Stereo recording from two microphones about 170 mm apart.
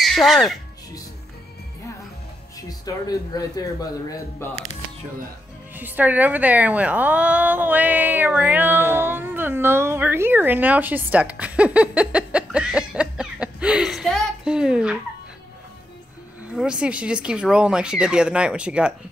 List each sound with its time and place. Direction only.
0.0 s speech: centre (ahead or behind)
2.8 s speech: 20° left (ahead or behind)
5.8 s a woman's voice: 10° right (ahead or behind)
16.5 s speech: 5° right (ahead or behind)